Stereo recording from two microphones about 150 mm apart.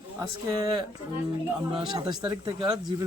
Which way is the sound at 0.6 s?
35° right (ahead or behind).